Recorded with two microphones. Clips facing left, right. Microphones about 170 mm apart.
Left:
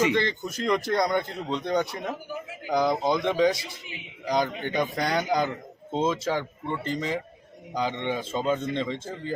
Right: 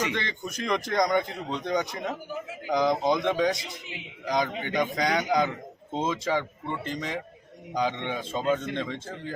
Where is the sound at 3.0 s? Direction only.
20° right (ahead or behind).